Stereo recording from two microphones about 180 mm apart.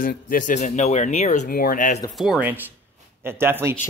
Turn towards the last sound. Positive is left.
turn(degrees=-15)  # may be behind; listen again after turning